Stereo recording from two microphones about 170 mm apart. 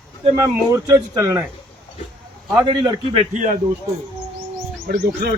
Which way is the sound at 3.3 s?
45° right (ahead or behind).